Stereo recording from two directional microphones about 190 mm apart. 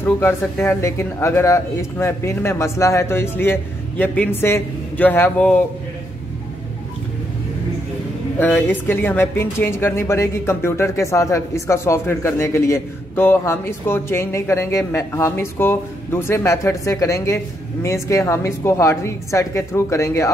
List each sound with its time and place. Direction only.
0.0 s speech: 10° left (ahead or behind)
8.4 s speech: 10° left (ahead or behind)